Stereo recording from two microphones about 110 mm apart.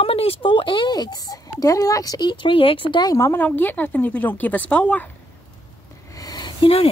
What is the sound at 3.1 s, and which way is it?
Speech, 25° left (ahead or behind).